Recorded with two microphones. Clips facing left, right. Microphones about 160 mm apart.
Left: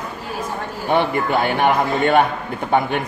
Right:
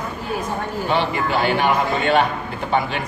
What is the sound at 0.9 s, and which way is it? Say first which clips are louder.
A man's voice: left 4 dB; 55° left (ahead or behind).